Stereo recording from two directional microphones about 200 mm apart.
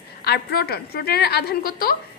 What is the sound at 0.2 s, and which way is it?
A woman's voice, 50° left (ahead or behind).